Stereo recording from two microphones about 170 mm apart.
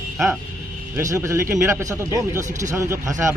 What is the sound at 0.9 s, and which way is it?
Speech, 15° right (ahead or behind).